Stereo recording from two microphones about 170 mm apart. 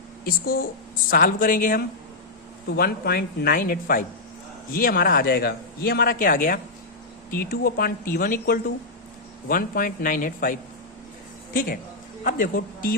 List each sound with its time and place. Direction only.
0.3 s speech: 60° left (ahead or behind)
2.6 s speech: 70° left (ahead or behind); by 10.6 s 50° left (ahead or behind)
12.2 s a man's voice: 55° left (ahead or behind)